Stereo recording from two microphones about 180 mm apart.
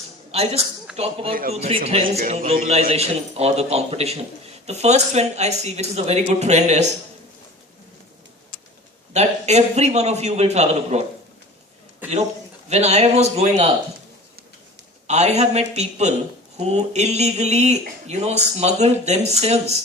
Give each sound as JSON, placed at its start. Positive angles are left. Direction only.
{"t": 0.3, "sound": "a man's voice", "side_deg": -35}
{"t": 1.3, "sound": "a man's voice", "side_deg": -55}
{"t": 1.5, "sound": "speech", "side_deg": -35}
{"t": 2.0, "sound": "a man's voice", "side_deg": -50}
{"t": 9.1, "sound": "speech", "side_deg": -35}
{"t": 12.6, "sound": "speech", "side_deg": -35}
{"t": 15.0, "sound": "speech", "side_deg": -40}